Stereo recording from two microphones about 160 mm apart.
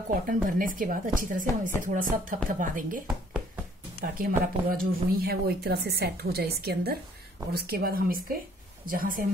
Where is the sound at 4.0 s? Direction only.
65° right (ahead or behind).